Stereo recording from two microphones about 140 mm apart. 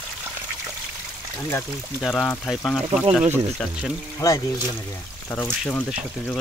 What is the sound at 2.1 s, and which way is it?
Speech, 10° left (ahead or behind).